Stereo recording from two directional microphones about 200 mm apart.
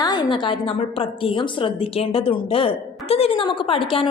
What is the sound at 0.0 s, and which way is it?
A woman's voice, 20° left (ahead or behind).